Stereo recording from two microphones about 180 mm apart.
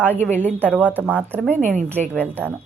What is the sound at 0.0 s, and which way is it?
Speech, 10° left (ahead or behind).